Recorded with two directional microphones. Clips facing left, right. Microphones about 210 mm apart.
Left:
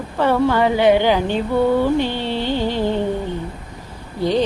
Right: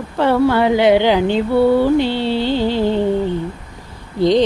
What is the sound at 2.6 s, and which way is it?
Music, 15° left (ahead or behind).